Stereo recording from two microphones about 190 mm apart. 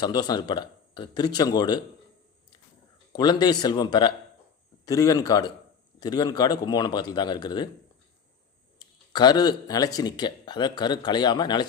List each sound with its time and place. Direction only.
0.0 s speech: 20° left (ahead or behind)
3.1 s speech: 20° left (ahead or behind)
9.1 s speech: 20° left (ahead or behind)